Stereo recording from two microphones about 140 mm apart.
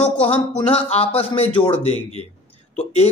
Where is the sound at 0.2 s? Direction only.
45° left (ahead or behind).